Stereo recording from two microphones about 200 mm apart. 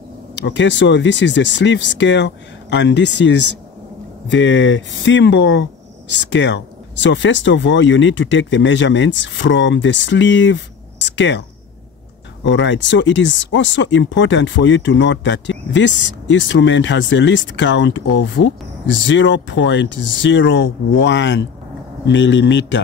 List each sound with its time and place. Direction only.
0.4 s speech: 65° left (ahead or behind)
12.4 s speech: 65° left (ahead or behind)